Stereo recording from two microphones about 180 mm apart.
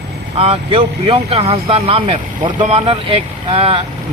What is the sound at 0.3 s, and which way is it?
A man's voice, 35° right (ahead or behind).